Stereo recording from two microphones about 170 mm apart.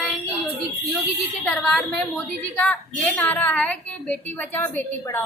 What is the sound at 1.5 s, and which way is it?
A woman's voice, 5° left (ahead or behind).